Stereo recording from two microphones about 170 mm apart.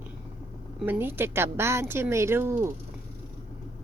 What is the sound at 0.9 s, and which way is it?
Music, 10° right (ahead or behind).